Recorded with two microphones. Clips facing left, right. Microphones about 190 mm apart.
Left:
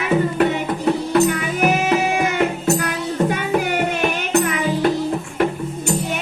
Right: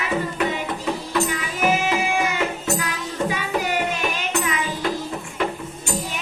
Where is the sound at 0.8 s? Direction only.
55° left (ahead or behind).